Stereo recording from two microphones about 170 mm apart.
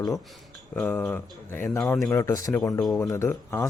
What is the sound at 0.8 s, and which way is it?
Speech, 5° left (ahead or behind).